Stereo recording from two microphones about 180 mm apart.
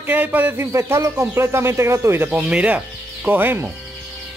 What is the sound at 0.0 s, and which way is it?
A man's voice, 10° right (ahead or behind).